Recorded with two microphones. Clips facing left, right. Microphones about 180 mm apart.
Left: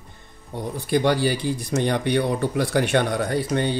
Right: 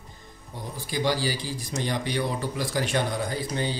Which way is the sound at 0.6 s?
60° left (ahead or behind).